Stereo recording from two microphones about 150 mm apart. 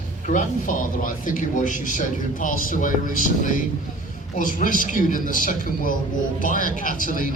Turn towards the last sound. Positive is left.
turn(degrees=65)  # may be behind; listen again after turning